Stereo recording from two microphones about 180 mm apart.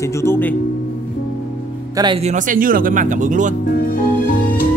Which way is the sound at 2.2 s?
45° right (ahead or behind).